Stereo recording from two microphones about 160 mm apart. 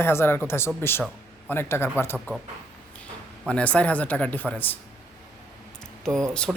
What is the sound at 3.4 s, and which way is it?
Speech, 10° left (ahead or behind).